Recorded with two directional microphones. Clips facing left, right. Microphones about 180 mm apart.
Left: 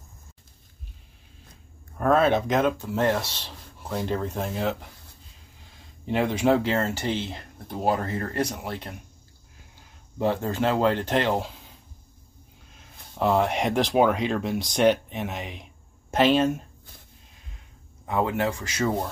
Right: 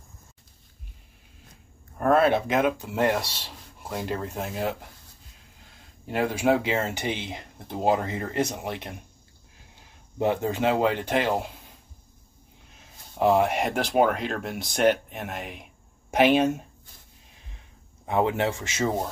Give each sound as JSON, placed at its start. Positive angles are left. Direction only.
{"t": 2.0, "sound": "speech", "side_deg": -5}
{"t": 6.0, "sound": "speech", "side_deg": -5}
{"t": 10.1, "sound": "speech", "side_deg": -15}
{"t": 13.2, "sound": "speech", "side_deg": -10}
{"t": 18.0, "sound": "speech", "side_deg": -20}